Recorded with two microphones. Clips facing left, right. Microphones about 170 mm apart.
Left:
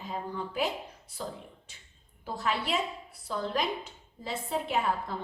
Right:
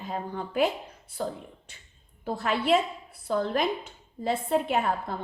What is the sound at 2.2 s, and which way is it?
A woman's voice, 55° right (ahead or behind).